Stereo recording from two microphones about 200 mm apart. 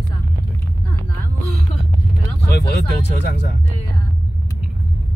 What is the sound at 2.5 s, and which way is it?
Speech, 55° left (ahead or behind).